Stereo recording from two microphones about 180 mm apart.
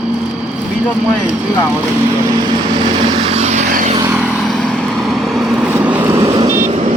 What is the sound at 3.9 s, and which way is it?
Vehicle, 15° right (ahead or behind).